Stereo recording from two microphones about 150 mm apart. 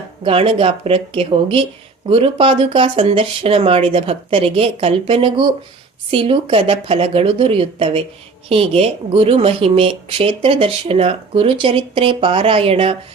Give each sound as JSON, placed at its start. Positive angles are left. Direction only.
{"t": 0.2, "sound": "speech", "side_deg": -35}